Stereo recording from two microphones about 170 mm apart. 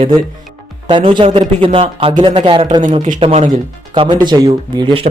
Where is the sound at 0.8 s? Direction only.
30° right (ahead or behind).